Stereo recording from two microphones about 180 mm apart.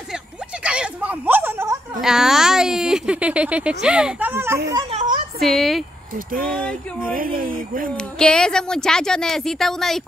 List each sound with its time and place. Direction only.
0.7 s a sound: 5° right (ahead or behind)
2.0 s speech: 5° right (ahead or behind)
4.9 s a sound: 45° right (ahead or behind)
5.4 s a woman's voice: centre (ahead or behind)
6.1 s speech: 50° right (ahead or behind)
7.9 s a woman's voice: 5° left (ahead or behind)